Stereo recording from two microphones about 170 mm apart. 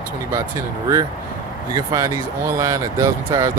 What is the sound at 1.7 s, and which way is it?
Speech, 20° right (ahead or behind).